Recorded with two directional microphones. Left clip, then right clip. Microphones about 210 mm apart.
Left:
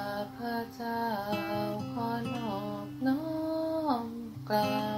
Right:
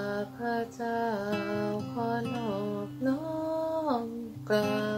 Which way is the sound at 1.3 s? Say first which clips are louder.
Right 1 dB; centre (ahead or behind).